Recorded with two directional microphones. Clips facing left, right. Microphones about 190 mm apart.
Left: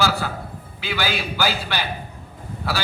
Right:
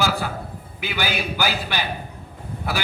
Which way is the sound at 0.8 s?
15° right (ahead or behind).